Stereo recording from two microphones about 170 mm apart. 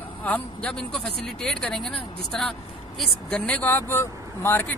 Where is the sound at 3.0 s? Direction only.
5° left (ahead or behind).